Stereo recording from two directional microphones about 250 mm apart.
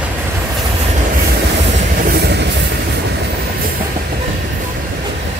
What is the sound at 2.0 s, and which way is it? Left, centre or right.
Train, right.